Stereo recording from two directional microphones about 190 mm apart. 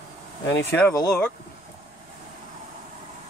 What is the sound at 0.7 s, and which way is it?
Speech, 10° left (ahead or behind).